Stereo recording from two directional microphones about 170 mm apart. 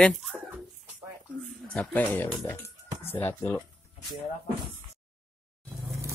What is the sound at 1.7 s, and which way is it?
Speech, 5° left (ahead or behind).